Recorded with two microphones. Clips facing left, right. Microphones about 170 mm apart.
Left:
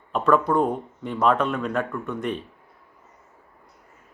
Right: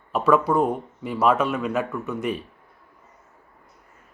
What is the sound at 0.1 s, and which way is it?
Speech, 5° right (ahead or behind).